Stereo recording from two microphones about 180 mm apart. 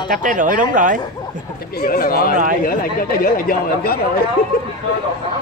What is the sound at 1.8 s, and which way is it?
A man's voice, 55° left (ahead or behind).